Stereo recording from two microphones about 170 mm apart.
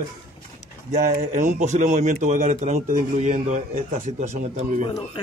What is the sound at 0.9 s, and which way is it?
A man's voice, 45° right (ahead or behind).